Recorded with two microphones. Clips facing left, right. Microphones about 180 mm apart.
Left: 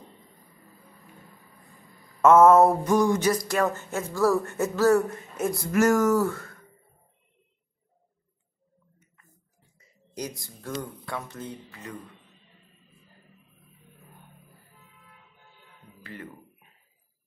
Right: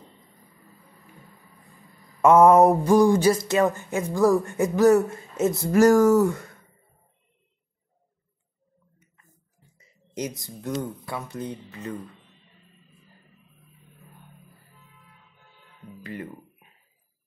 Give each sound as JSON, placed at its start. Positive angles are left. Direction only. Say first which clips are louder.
{"t": 2.2, "sound": "speech", "louder": "right 1 dB", "side_deg": -15}
{"t": 2.8, "sound": "speech", "louder": "right 5 dB", "side_deg": -30}
{"t": 6.1, "sound": "speech", "louder": "right 4 dB", "side_deg": -20}
{"t": 10.1, "sound": "speech", "louder": "right 4 dB", "side_deg": -20}
{"t": 11.1, "sound": "speech", "louder": "right 3 dB", "side_deg": -10}
{"t": 16.0, "sound": "music", "louder": "right 6 dB", "side_deg": -15}